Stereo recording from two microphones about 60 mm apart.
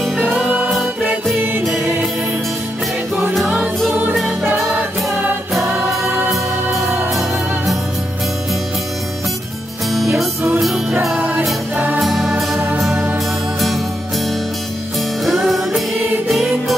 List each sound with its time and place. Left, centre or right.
3.3 s music: centre
6.0 s music: right
7.1 s music: centre
10.6 s music: centre
11.1 s music: right
12.0 s music: centre
12.5 s music: right
13.6 s music: centre